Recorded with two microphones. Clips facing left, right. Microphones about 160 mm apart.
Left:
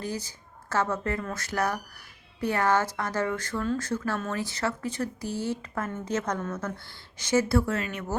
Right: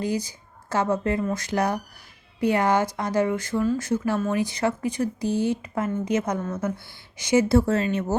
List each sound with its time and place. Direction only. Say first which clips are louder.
0.0 s speech: right 7 dB; 15° right (ahead or behind)